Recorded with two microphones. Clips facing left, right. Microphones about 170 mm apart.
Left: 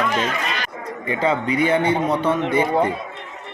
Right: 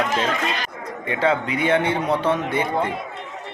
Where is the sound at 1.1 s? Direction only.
Centre (ahead or behind).